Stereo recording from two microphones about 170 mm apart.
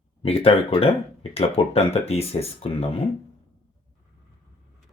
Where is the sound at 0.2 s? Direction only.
35° left (ahead or behind).